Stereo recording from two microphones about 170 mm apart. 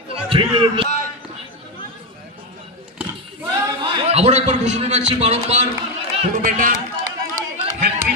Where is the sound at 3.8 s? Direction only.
35° right (ahead or behind).